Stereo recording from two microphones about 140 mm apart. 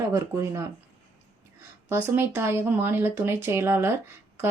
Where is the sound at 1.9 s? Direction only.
15° right (ahead or behind).